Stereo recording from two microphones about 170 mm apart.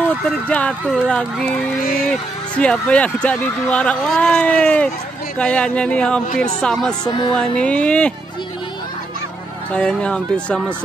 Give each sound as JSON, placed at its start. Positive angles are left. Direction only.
{"t": 0.5, "sound": "speech", "side_deg": 5}
{"t": 7.1, "sound": "speech", "side_deg": 25}
{"t": 7.3, "sound": "speech", "side_deg": 5}
{"t": 9.7, "sound": "speech", "side_deg": 5}